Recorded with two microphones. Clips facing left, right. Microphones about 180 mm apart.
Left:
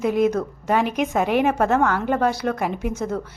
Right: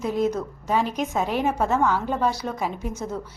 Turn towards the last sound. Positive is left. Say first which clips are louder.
# left 5 dB
turn(degrees=60)  # may be behind; listen again after turning